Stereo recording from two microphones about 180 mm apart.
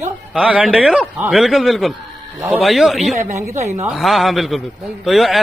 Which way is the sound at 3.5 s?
35° right (ahead or behind).